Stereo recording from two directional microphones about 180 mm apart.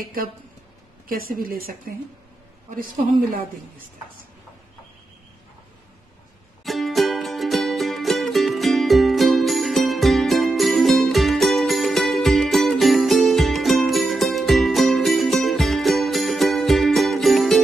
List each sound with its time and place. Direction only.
1.0 s a woman's voice: 50° right (ahead or behind)
6.6 s music: centre (ahead or behind)